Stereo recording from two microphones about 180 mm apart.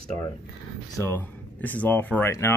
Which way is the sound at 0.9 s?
10° left (ahead or behind).